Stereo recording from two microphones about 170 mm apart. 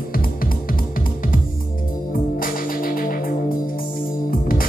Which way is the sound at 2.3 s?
55° left (ahead or behind).